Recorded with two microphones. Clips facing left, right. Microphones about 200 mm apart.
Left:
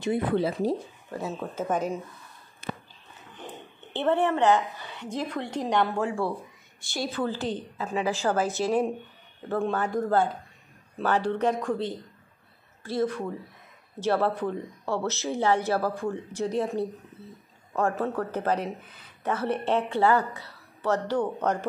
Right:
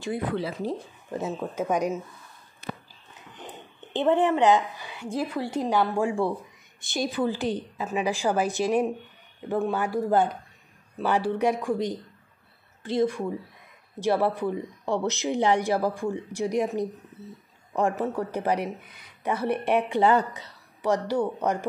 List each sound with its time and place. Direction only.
0.0 s speech: 25° left (ahead or behind)
1.3 s speech: 10° right (ahead or behind)
3.9 s speech: 15° right (ahead or behind)